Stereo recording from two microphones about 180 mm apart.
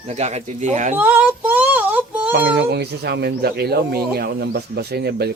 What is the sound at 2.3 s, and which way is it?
Speech, 65° right (ahead or behind).